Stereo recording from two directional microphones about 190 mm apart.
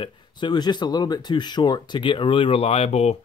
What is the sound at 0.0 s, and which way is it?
Speech, 25° left (ahead or behind).